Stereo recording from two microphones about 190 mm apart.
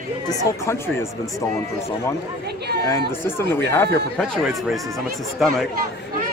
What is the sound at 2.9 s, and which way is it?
A man's voice, 15° left (ahead or behind).